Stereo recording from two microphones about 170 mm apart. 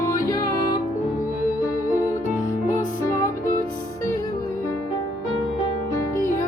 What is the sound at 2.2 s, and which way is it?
Music, 50° left (ahead or behind).